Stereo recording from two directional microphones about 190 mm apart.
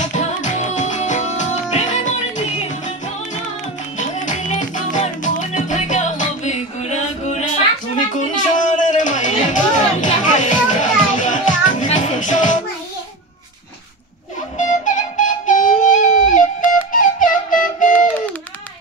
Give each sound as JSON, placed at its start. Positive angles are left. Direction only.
{"t": 0.0, "sound": "music", "side_deg": 40}
{"t": 4.0, "sound": "music", "side_deg": 40}
{"t": 14.6, "sound": "music", "side_deg": 40}